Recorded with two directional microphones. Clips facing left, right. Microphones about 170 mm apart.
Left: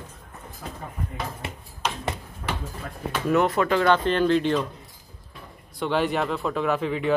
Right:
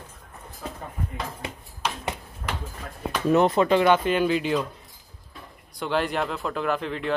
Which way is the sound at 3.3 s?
20° right (ahead or behind).